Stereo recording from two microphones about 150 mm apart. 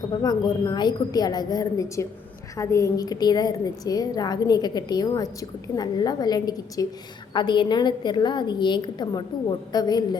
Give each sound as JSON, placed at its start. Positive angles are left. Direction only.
{"t": 0.2, "sound": "a woman's voice", "side_deg": 25}